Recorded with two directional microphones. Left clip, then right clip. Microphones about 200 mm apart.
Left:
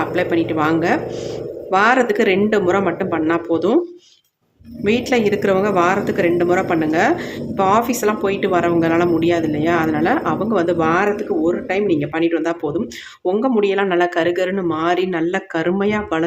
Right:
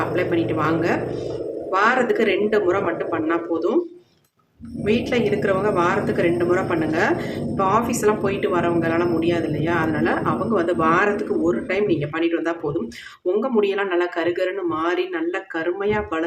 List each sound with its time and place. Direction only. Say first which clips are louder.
0.1 s a woman's voice: left 3 dB; 35° left (ahead or behind)
4.8 s a woman's voice: left 4 dB; 35° left (ahead or behind)